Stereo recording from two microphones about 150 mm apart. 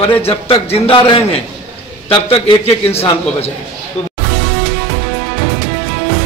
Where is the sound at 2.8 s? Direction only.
40° left (ahead or behind).